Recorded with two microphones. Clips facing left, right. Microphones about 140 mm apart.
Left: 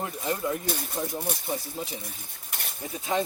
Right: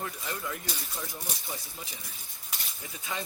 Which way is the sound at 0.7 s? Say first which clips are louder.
Left 8 dB; 55° left (ahead or behind).